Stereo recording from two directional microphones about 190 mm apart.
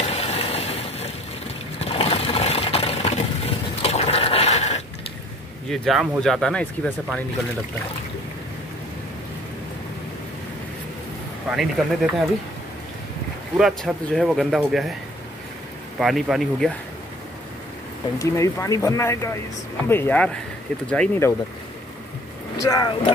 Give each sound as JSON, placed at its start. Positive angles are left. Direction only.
{"t": 0.0, "sound": "a sound", "side_deg": 35}
{"t": 1.8, "sound": "sewing machine", "side_deg": 30}
{"t": 5.7, "sound": "speech", "side_deg": 0}
{"t": 11.5, "sound": "speech", "side_deg": 0}
{"t": 13.6, "sound": "speech", "side_deg": -5}
{"t": 16.0, "sound": "speech", "side_deg": 0}
{"t": 18.2, "sound": "speech", "side_deg": 15}
{"t": 22.6, "sound": "speech", "side_deg": 20}